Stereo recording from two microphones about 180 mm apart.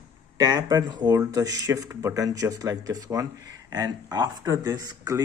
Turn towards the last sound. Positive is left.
turn(degrees=-20)  # may be behind; listen again after turning